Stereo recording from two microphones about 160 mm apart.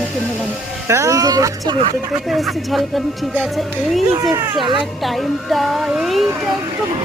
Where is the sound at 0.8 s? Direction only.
20° right (ahead or behind).